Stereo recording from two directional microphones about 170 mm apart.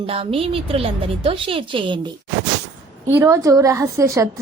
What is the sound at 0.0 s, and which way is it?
A woman's voice, 35° right (ahead or behind).